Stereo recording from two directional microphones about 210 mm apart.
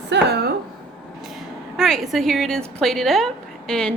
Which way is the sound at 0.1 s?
50° right (ahead or behind).